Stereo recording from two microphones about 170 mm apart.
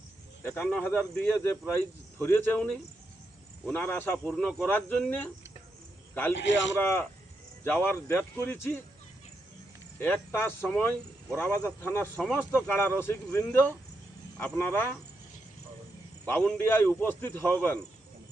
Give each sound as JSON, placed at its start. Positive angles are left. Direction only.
{"t": 0.4, "sound": "speech", "side_deg": 5}
{"t": 6.3, "sound": "a man's voice", "side_deg": 90}
{"t": 6.7, "sound": "speech", "side_deg": 15}
{"t": 10.0, "sound": "speech", "side_deg": 10}
{"t": 16.2, "sound": "speech", "side_deg": 10}